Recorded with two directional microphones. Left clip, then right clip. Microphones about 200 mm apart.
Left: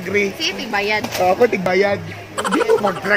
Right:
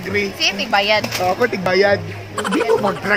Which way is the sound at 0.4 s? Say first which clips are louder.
Right 4 dB; 35° right (ahead or behind).